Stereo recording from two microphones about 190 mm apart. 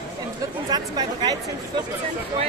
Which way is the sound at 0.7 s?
20° right (ahead or behind).